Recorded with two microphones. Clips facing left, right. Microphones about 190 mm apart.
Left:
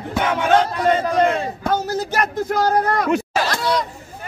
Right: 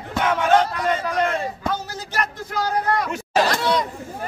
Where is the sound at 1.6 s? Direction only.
45° left (ahead or behind).